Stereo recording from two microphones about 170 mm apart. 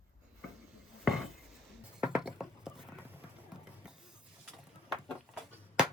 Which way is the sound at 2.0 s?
5° right (ahead or behind).